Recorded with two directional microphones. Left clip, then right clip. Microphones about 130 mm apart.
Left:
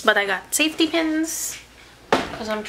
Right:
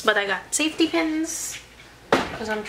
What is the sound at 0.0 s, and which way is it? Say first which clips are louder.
A woman's voice: left 2 dB; 20° left (ahead or behind).